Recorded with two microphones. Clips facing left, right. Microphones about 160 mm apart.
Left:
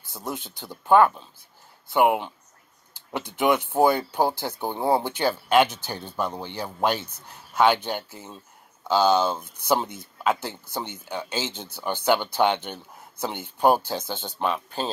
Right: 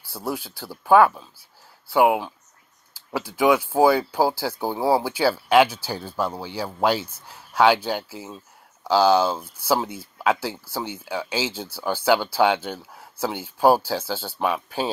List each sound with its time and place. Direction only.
0.2 s speech: centre (ahead or behind)